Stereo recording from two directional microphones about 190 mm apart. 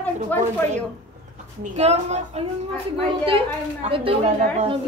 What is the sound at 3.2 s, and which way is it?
A woman's voice, 30° right (ahead or behind).